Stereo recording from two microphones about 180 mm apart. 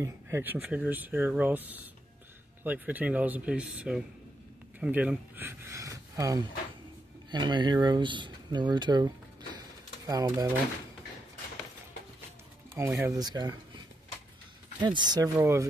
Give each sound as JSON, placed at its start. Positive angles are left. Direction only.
{"t": 0.0, "sound": "speech", "side_deg": -10}
{"t": 12.8, "sound": "speech", "side_deg": -15}
{"t": 14.8, "sound": "speech", "side_deg": -25}